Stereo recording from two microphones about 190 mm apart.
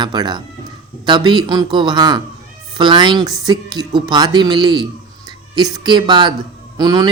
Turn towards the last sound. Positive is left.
turn(degrees=-20)  # may be behind; listen again after turning